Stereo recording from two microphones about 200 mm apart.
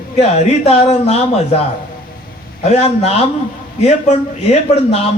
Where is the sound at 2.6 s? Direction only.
30° left (ahead or behind).